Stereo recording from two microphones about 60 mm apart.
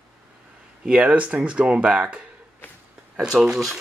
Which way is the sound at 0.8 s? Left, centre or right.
Centre.